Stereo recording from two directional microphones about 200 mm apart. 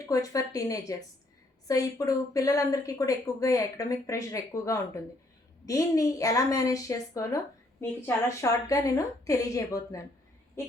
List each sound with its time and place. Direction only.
0.0 s a woman's voice: 15° left (ahead or behind)